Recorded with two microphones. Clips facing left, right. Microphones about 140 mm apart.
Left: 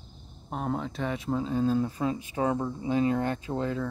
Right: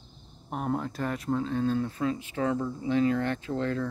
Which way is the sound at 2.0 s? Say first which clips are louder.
Left 1 dB; 20° left (ahead or behind).